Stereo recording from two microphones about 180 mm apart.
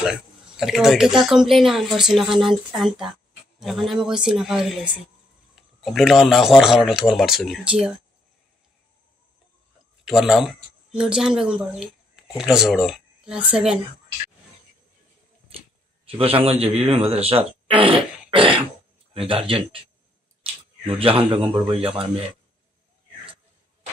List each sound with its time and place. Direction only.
0.0 s speech: 5° right (ahead or behind)
10.0 s speech: centre (ahead or behind)
15.5 s a sound: 30° right (ahead or behind)
16.1 s speech: 30° right (ahead or behind)
18.3 s throat clearing: 30° right (ahead or behind)
19.1 s speech: 30° right (ahead or behind)
20.8 s speech: 30° right (ahead or behind)